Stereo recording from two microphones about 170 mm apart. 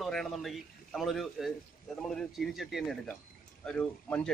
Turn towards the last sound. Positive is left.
turn(degrees=5)  # may be behind; listen again after turning